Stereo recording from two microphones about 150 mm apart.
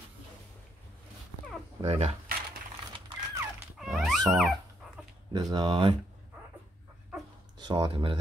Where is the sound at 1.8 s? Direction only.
45° right (ahead or behind).